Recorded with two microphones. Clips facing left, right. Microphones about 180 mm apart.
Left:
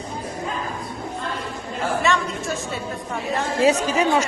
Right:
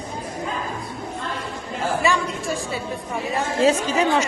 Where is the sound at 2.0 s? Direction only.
Centre (ahead or behind).